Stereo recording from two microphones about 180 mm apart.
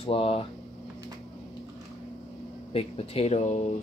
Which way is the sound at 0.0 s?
30° left (ahead or behind).